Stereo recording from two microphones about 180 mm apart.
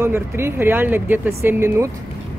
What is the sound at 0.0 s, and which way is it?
A woman's voice, 15° right (ahead or behind).